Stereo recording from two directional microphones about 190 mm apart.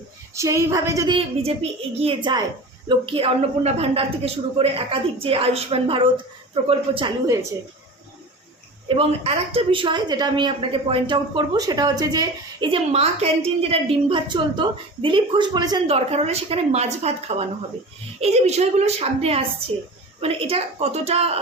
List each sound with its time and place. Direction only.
0.3 s a woman's voice: 15° right (ahead or behind)
8.9 s a woman's voice: 30° right (ahead or behind)
16.0 s a woman's voice: 35° right (ahead or behind)